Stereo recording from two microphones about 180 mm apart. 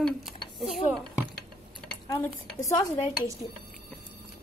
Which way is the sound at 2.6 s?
20° left (ahead or behind).